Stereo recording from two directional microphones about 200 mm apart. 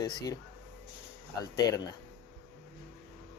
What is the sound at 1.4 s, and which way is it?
Speech, 20° left (ahead or behind).